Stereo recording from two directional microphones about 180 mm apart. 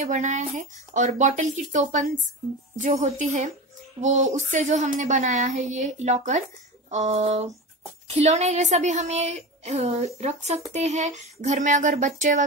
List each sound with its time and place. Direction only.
0.0 s a woman's voice: 45° right (ahead or behind)